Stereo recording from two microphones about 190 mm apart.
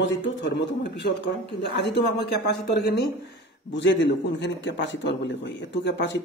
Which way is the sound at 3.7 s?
70° left (ahead or behind).